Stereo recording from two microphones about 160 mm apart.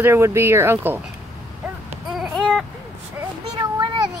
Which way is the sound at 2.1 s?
Centre (ahead or behind).